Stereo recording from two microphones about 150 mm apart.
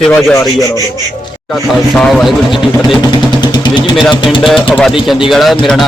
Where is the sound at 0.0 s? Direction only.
5° left (ahead or behind).